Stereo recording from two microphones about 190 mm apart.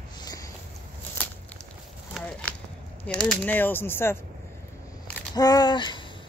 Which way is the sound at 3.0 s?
5° left (ahead or behind).